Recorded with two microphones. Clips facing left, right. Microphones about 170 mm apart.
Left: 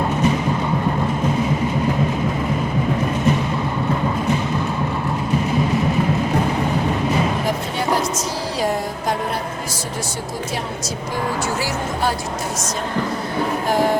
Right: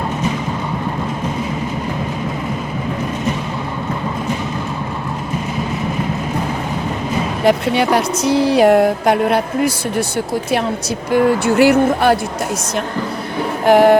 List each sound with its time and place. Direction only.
7.4 s speech: 75° right (ahead or behind)
11.1 s speech: 65° right (ahead or behind)
13.7 s music: 70° right (ahead or behind)